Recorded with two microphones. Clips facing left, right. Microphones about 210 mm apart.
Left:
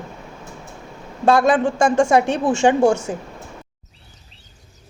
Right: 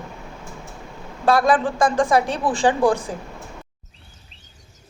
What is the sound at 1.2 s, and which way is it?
A woman's voice, 25° left (ahead or behind).